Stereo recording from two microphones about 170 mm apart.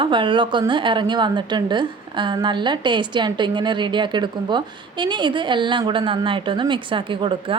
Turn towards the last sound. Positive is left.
turn(degrees=-30)  # may be behind; listen again after turning